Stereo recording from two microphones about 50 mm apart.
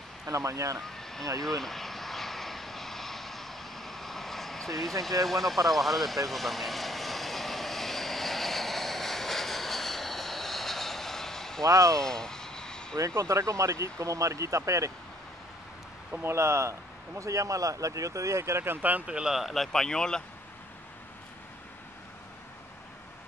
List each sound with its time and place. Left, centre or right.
0.3 s speech: right
0.8 s vehicle: centre
11.7 s speech: right
12.0 s vehicle: centre
13.0 s speech: right
16.2 s speech: right
17.2 s speech: right
18.8 s speech: right
19.0 s speech: centre
19.3 s speech: centre